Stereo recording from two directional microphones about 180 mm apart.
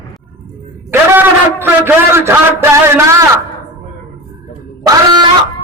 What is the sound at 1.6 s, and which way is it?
A man's voice, 10° right (ahead or behind).